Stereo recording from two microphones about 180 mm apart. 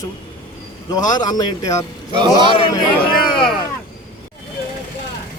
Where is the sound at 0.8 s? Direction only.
20° left (ahead or behind).